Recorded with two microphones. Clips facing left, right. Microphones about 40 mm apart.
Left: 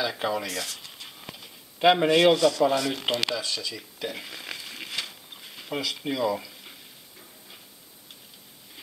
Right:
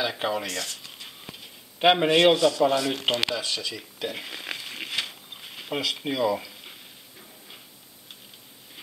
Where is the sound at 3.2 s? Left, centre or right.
Centre.